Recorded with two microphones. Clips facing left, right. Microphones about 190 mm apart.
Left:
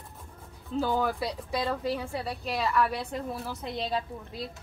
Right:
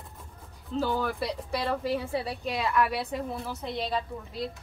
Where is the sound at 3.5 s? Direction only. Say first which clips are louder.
Even; 5° left (ahead or behind).